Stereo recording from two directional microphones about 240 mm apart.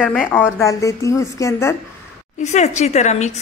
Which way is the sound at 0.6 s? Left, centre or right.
Centre.